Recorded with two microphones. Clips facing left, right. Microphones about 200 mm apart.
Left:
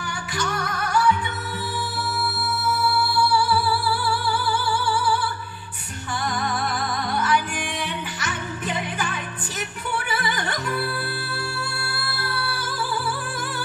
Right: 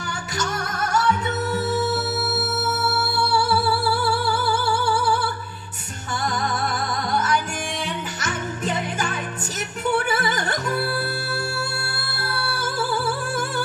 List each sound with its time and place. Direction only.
0.4 s flamenco: 45° right (ahead or behind)
3.3 s music: 45° right (ahead or behind)
7.1 s music: 45° right (ahead or behind)
8.2 s jingle bell: 45° right (ahead or behind)
9.9 s music: 45° right (ahead or behind)
12.2 s music: 45° right (ahead or behind)